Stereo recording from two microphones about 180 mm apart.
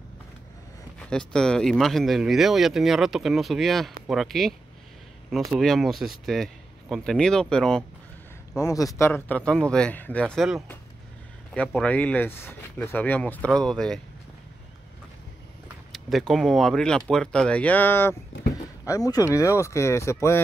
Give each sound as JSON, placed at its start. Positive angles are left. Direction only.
{"t": 0.9, "sound": "speech", "side_deg": 5}
{"t": 5.6, "sound": "speech", "side_deg": 0}
{"t": 8.5, "sound": "speech", "side_deg": 20}
{"t": 15.9, "sound": "speech", "side_deg": 0}